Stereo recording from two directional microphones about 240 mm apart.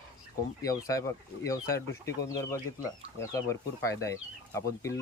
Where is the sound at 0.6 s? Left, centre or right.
Centre.